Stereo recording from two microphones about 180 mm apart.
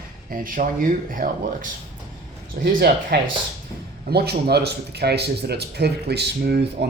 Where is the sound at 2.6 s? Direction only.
55° right (ahead or behind).